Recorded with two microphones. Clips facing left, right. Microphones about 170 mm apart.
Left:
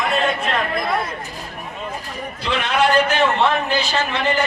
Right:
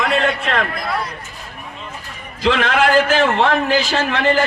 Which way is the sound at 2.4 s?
90° right.